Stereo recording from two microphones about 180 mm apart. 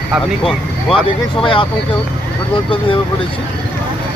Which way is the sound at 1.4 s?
25° left (ahead or behind).